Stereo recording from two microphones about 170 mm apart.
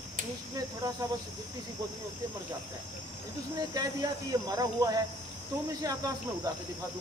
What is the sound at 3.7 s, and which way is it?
Speech, 20° right (ahead or behind).